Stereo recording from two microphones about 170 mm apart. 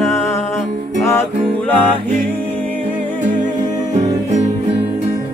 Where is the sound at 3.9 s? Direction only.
45° right (ahead or behind).